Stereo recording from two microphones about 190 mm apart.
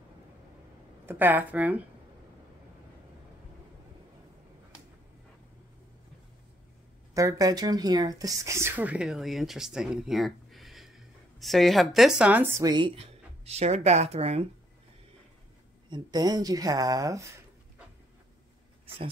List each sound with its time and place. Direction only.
1.0 s speech: 10° right (ahead or behind)
7.2 s speech: 20° right (ahead or behind)
12.6 s speech: 25° right (ahead or behind)
15.9 s speech: 20° right (ahead or behind)